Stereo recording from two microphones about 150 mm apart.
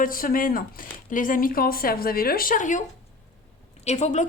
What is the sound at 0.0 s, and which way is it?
Speech, 70° left (ahead or behind).